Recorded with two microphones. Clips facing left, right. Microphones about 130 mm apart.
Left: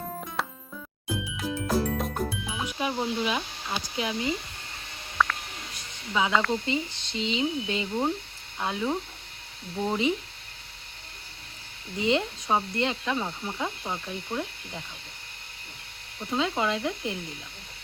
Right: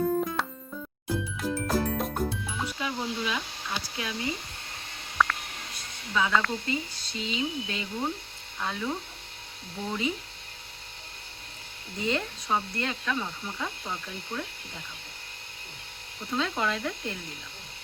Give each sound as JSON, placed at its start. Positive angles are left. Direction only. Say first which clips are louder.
{"t": 0.4, "sound": "music", "louder": "even", "side_deg": 0}
{"t": 2.7, "sound": "speech", "louder": "left 7 dB", "side_deg": 20}
{"t": 5.1, "sound": "a sound", "louder": "even", "side_deg": 0}
{"t": 6.1, "sound": "speech", "louder": "left 2 dB", "side_deg": 15}
{"t": 9.8, "sound": "speech", "louder": "left 4 dB", "side_deg": 30}
{"t": 11.9, "sound": "speech", "louder": "left 4 dB", "side_deg": 15}
{"t": 16.3, "sound": "speech", "louder": "left 2 dB", "side_deg": 15}